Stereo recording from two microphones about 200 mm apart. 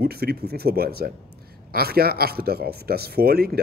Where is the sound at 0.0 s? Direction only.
50° right (ahead or behind).